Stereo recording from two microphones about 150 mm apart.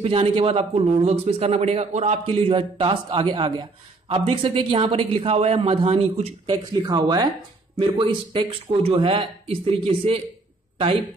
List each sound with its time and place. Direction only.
0.0 s a man's voice: 40° right (ahead or behind)
2.2 s a man's voice: 35° right (ahead or behind)
6.4 s a man's voice: 30° right (ahead or behind)